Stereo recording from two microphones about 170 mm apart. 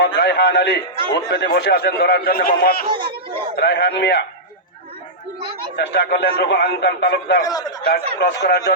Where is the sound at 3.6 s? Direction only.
75° left (ahead or behind).